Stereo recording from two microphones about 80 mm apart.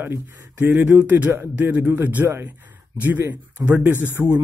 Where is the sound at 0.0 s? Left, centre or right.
Right.